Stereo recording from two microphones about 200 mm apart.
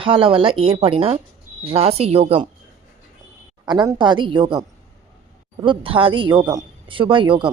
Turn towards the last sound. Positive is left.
turn(degrees=-25)  # may be behind; listen again after turning